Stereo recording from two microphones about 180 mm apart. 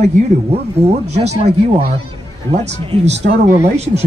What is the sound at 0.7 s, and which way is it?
Speech, 35° right (ahead or behind).